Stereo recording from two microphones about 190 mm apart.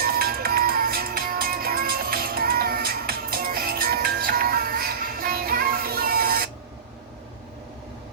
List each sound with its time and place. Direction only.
0.0 s music: 50° right (ahead or behind)